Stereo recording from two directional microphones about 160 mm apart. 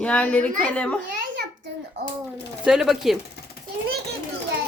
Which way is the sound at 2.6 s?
5° right (ahead or behind).